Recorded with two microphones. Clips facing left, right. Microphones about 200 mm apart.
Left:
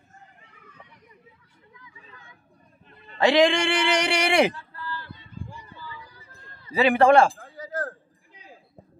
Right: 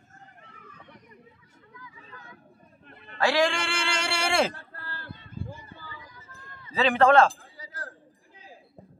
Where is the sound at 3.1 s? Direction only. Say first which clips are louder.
Left 5 dB; 20° left (ahead or behind).